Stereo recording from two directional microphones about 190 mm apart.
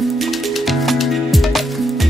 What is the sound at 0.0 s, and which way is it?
Music, centre (ahead or behind).